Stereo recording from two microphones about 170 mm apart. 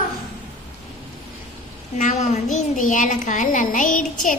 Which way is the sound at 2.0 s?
45° left (ahead or behind).